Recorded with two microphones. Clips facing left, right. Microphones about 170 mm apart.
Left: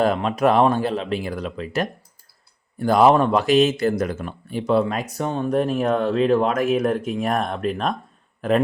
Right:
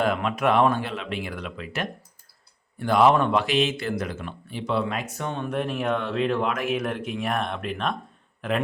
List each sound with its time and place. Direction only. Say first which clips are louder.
0.0 s a man's voice: left 5 dB; 35° left (ahead or behind)